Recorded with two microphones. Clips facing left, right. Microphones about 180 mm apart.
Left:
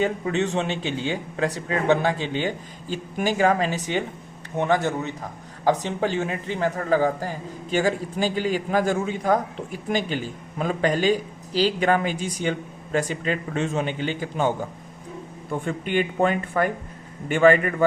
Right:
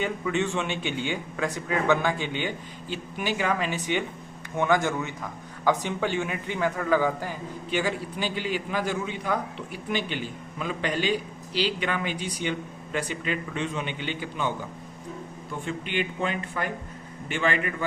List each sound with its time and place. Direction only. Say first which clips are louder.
0.0 s a man's voice: left 4 dB; 40° left (ahead or behind)